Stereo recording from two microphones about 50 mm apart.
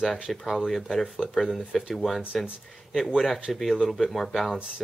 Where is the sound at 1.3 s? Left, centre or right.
Centre.